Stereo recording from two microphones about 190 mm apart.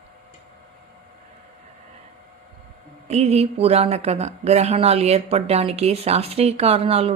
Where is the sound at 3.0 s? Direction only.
35° right (ahead or behind).